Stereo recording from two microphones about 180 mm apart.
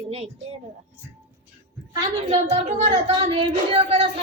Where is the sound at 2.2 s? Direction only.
35° right (ahead or behind).